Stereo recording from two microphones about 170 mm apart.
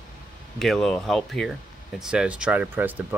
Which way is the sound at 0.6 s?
Centre (ahead or behind).